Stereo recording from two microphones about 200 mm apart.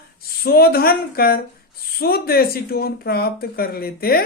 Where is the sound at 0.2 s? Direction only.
50° left (ahead or behind).